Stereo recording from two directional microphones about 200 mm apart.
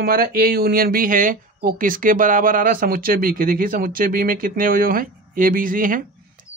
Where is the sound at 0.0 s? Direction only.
45° right (ahead or behind).